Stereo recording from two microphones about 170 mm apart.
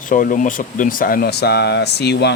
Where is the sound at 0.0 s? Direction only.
50° left (ahead or behind).